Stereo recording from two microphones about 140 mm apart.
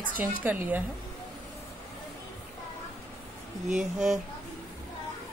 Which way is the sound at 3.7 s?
5° right (ahead or behind).